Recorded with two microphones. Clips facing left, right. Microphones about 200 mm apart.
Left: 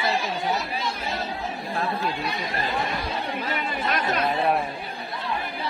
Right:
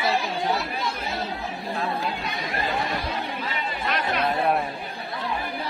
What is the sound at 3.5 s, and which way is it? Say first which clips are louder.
Chatter: left 2 dB; 45° left (ahead or behind).